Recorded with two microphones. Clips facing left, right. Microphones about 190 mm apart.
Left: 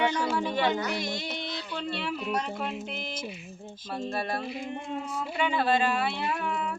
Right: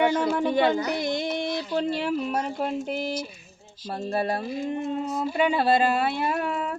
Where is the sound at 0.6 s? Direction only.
35° right (ahead or behind).